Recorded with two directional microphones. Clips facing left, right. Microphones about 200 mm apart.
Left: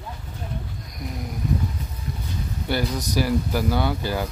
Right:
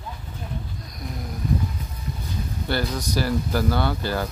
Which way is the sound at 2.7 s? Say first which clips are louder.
Left 1 dB; 15° left (ahead or behind).